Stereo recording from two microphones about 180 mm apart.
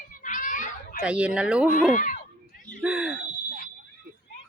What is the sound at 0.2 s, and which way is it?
Cat, 45° left (ahead or behind).